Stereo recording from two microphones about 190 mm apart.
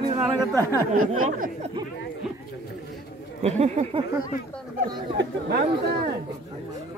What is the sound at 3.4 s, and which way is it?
Speech, 35° right (ahead or behind).